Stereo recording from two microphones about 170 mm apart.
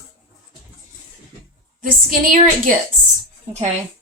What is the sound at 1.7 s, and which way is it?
Speech, 55° right (ahead or behind).